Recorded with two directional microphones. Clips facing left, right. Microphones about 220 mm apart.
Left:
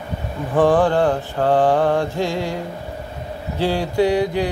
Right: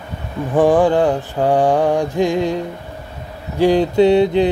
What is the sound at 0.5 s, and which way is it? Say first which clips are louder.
Mantra: right 3 dB; 15° right (ahead or behind).